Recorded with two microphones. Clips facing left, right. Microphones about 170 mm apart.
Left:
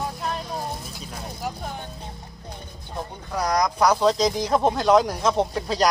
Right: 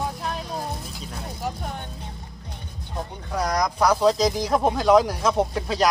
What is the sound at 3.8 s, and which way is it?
Speech, 5° right (ahead or behind).